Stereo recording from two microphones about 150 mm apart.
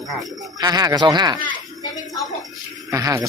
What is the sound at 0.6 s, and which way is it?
Speech, 25° right (ahead or behind).